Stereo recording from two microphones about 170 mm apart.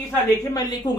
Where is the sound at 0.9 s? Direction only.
25° left (ahead or behind).